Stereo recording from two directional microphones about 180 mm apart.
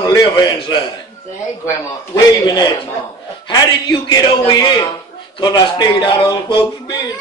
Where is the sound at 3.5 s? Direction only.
25° left (ahead or behind).